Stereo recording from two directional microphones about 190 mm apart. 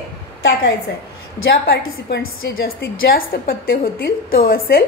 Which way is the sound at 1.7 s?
55° left (ahead or behind).